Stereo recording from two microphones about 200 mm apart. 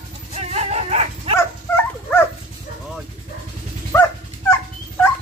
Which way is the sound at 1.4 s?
10° left (ahead or behind).